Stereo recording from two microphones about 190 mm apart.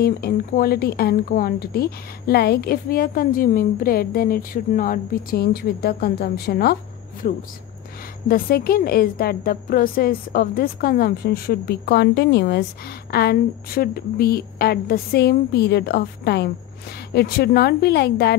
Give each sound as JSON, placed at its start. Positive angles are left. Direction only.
{"t": 0.0, "sound": "a woman's voice", "side_deg": 50}